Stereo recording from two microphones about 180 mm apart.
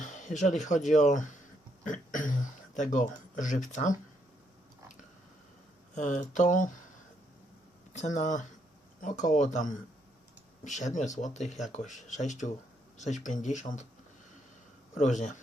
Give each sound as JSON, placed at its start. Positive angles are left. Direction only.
{"t": 0.0, "sound": "speech", "side_deg": 45}
{"t": 5.9, "sound": "speech", "side_deg": 45}
{"t": 7.9, "sound": "speech", "side_deg": 40}
{"t": 14.9, "sound": "speech", "side_deg": 40}